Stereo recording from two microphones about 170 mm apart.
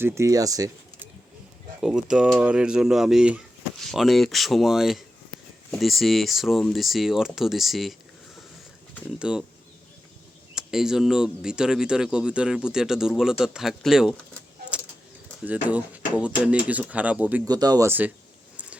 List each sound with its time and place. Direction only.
0.0 s speech: 15° right (ahead or behind)
1.8 s speech: 5° right (ahead or behind)
9.1 s speech: 5° right (ahead or behind)
10.5 s speech: 5° right (ahead or behind)
15.4 s speech: 10° right (ahead or behind)
17.4 s speech: 25° right (ahead or behind)